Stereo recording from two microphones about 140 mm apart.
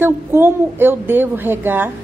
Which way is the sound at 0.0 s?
15° right (ahead or behind).